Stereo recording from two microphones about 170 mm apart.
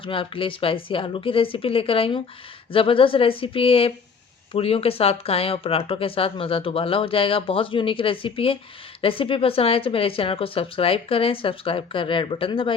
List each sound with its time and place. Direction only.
0.0 s speech: 30° left (ahead or behind)